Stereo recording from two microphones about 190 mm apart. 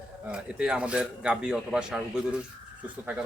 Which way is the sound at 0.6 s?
5° right (ahead or behind).